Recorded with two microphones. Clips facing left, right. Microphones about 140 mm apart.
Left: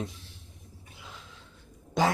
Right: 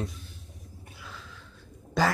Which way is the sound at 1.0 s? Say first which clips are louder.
Right 2 dB; 20° left (ahead or behind).